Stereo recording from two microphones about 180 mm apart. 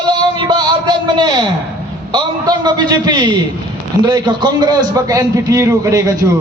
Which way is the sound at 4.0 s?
25° right (ahead or behind).